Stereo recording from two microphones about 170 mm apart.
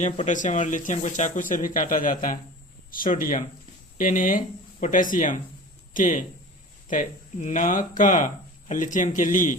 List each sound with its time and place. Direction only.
0.3 s speech: 45° left (ahead or behind)